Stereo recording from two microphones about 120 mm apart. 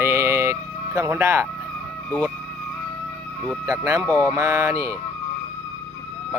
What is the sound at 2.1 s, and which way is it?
Speech, 5° left (ahead or behind).